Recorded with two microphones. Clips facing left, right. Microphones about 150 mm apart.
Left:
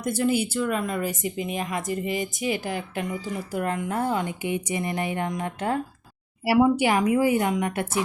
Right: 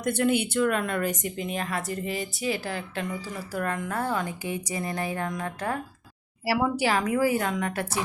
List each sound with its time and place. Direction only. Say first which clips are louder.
0.1 s a woman's voice: even; 5° left (ahead or behind); by 7.9 s 20° left (ahead or behind)